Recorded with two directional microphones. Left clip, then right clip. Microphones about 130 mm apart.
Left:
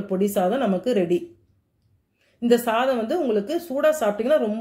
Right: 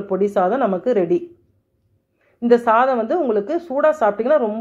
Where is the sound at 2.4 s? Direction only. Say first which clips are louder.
Right 6 dB; 25° left (ahead or behind).